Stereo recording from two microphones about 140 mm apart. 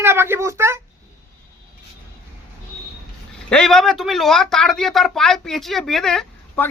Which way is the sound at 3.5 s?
5° left (ahead or behind).